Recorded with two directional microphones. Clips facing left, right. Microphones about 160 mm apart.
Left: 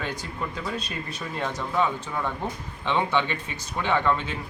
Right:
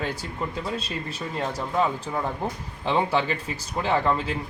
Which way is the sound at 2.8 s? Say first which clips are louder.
Right 1 dB; 35° right (ahead or behind).